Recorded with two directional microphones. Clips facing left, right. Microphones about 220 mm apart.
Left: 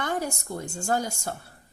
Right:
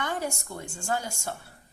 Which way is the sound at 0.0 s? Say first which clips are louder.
Left 2 dB; 40° left (ahead or behind).